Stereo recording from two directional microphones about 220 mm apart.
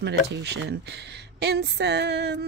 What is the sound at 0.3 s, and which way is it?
Speech, 50° right (ahead or behind).